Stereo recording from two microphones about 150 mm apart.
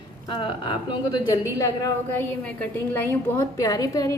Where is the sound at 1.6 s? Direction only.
25° left (ahead or behind).